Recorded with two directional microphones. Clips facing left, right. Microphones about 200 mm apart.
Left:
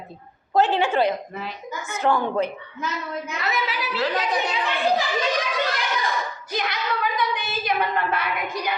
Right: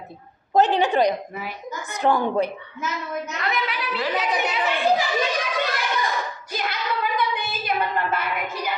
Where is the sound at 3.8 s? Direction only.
Centre (ahead or behind).